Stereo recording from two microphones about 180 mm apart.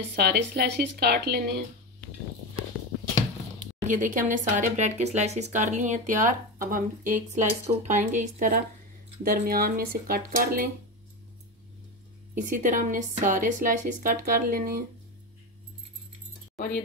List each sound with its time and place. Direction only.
0.1 s a woman's voice: 65° right (ahead or behind)
3.8 s speech: 45° right (ahead or behind)
12.4 s speech: 45° right (ahead or behind)
16.5 s speech: 55° left (ahead or behind)